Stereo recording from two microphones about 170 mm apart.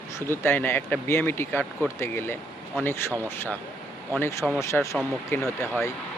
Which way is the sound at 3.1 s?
15° right (ahead or behind).